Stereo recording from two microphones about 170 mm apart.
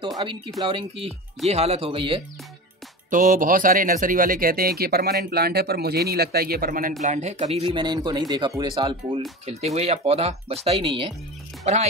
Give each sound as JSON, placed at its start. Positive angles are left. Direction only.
{"t": 0.2, "sound": "speech", "side_deg": -30}
{"t": 3.1, "sound": "speech", "side_deg": -50}
{"t": 7.0, "sound": "speech", "side_deg": -45}